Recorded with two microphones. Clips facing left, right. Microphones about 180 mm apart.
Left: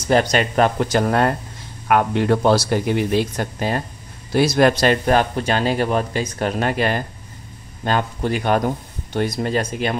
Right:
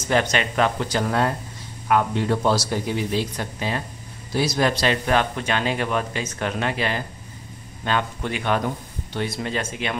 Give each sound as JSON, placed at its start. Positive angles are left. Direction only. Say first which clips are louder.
{"t": 0.0, "sound": "speech", "louder": "left 4 dB", "side_deg": 35}
{"t": 4.3, "sound": "speech", "louder": "left 6 dB", "side_deg": 60}